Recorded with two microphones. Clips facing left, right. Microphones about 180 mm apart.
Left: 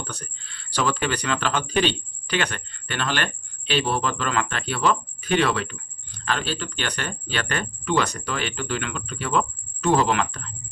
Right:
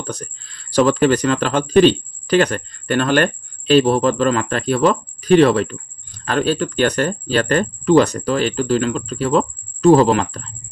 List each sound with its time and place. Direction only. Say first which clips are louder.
0.0 s speech: right 8 dB; 40° right (ahead or behind)